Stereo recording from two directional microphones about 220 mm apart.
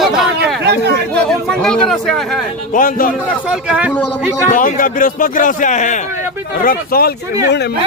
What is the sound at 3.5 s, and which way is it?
Speech, 5° right (ahead or behind).